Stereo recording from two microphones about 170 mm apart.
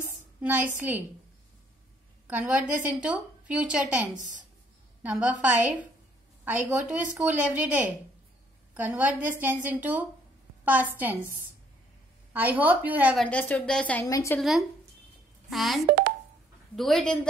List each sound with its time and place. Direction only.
0.4 s a woman's voice: 10° right (ahead or behind)
2.2 s a woman's voice: 10° right (ahead or behind)
12.3 s a woman's voice: 10° right (ahead or behind)
13.2 s speech: 10° left (ahead or behind)
14.0 s a woman's voice: 20° left (ahead or behind)
15.5 s a woman's voice: centre (ahead or behind)